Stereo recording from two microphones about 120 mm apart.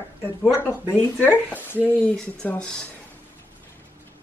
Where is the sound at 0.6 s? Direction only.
20° left (ahead or behind).